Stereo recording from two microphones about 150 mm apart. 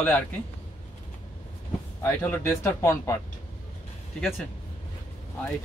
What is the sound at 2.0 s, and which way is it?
Speech, 15° left (ahead or behind).